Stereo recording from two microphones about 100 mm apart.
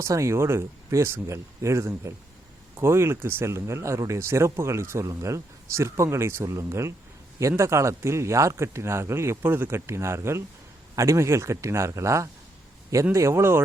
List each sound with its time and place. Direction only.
0.0 s speech: 30° right (ahead or behind)